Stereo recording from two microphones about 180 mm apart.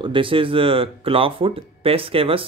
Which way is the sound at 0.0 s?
30° right (ahead or behind).